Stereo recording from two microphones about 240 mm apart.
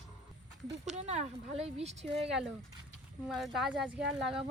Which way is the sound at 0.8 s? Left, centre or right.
Right.